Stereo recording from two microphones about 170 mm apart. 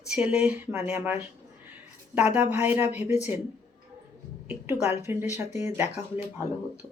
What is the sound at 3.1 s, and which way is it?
Speech, 40° left (ahead or behind).